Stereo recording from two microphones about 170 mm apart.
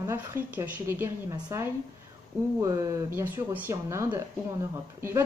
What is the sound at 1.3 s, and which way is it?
A woman's voice, 25° right (ahead or behind).